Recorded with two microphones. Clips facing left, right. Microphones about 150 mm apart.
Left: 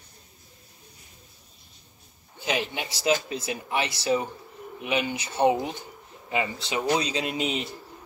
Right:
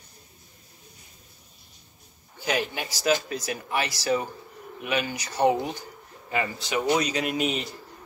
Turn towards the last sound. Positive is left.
turn(degrees=25)  # may be behind; listen again after turning